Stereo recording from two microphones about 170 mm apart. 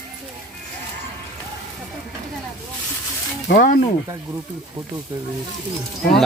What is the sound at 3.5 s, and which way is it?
Speech, 60° left (ahead or behind).